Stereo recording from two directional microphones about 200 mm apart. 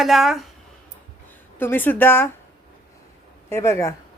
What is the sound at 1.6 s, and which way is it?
Speech, 10° left (ahead or behind).